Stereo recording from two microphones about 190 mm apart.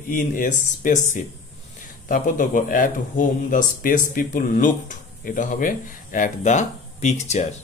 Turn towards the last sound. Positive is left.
turn(degrees=35)  # may be behind; listen again after turning